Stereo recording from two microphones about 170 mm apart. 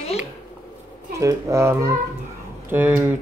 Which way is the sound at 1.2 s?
15° right (ahead or behind).